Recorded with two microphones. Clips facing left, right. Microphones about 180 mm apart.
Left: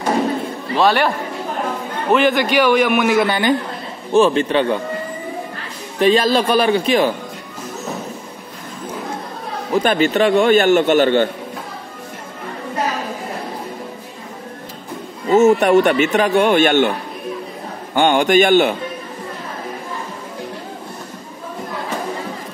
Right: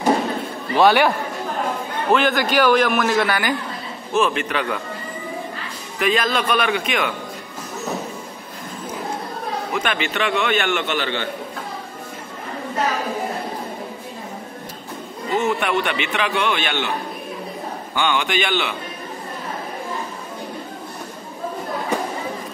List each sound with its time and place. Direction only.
0.7 s a man's voice: centre (ahead or behind)
3.3 s a man's voice: 25° left (ahead or behind)
5.9 s a man's voice: 30° left (ahead or behind)
9.7 s a man's voice: 35° left (ahead or behind)
15.3 s a man's voice: 45° left (ahead or behind)
17.9 s a man's voice: 50° left (ahead or behind)